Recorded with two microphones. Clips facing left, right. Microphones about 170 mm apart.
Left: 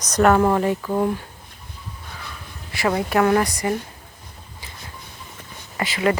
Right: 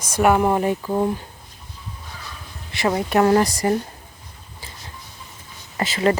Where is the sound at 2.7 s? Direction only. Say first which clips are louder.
Right 1 dB; 20° right (ahead or behind).